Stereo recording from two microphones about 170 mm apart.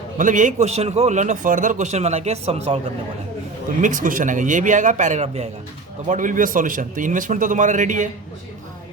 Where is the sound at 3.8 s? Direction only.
50° right (ahead or behind).